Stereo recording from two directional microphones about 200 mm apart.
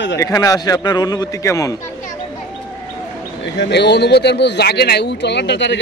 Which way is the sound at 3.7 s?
55° left (ahead or behind).